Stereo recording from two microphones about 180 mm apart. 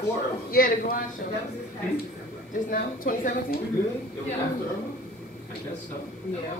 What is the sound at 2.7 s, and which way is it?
Speech, 50° left (ahead or behind).